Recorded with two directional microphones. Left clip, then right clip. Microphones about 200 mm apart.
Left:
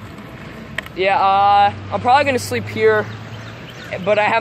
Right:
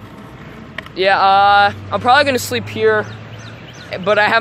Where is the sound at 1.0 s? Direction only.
35° right (ahead or behind).